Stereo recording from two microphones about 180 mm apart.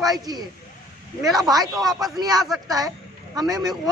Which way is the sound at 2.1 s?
20° right (ahead or behind).